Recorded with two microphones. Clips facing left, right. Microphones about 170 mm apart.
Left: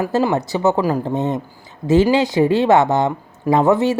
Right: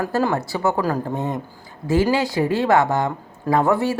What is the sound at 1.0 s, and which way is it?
Speech, 20° left (ahead or behind).